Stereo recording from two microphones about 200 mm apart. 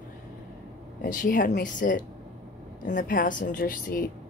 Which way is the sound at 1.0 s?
45° left (ahead or behind).